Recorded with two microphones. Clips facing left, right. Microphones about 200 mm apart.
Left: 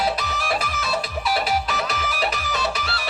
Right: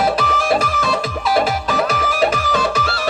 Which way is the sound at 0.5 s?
50° right (ahead or behind).